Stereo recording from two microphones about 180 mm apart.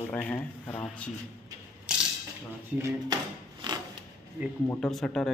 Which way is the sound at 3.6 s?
25° right (ahead or behind).